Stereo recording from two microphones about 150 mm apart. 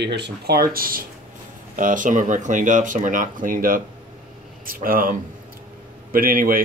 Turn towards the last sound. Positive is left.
turn(degrees=-70)  # may be behind; listen again after turning